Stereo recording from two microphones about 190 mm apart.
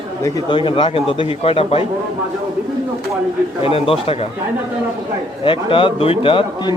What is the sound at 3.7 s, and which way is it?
Speech, 30° left (ahead or behind).